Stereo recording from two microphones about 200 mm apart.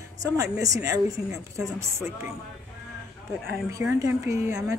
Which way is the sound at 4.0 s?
15° right (ahead or behind).